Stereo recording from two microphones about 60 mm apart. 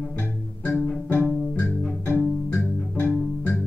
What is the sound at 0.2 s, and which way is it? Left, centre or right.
Music, left.